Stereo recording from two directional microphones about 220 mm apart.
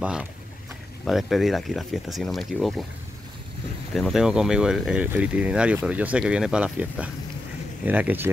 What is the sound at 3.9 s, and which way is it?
Speech, centre (ahead or behind).